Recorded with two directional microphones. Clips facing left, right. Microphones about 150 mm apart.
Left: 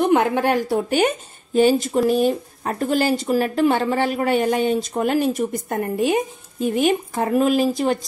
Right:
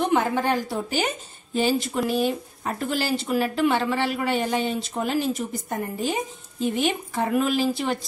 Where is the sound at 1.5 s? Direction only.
50° left (ahead or behind); by 6.1 s 65° left (ahead or behind).